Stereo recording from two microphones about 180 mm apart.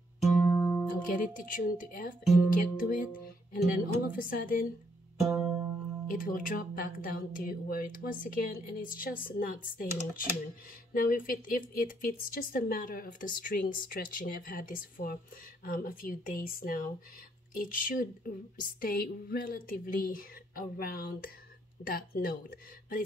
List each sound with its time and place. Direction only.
0.2 s music: 5° left (ahead or behind)
0.9 s speech: 50° left (ahead or behind)
5.2 s music: 15° right (ahead or behind)
6.0 s speech: 50° left (ahead or behind)